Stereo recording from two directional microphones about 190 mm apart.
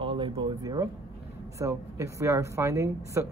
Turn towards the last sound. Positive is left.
turn(degrees=-15)  # may be behind; listen again after turning